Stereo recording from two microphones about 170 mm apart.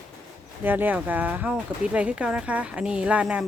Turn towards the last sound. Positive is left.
turn(degrees=-5)  # may be behind; listen again after turning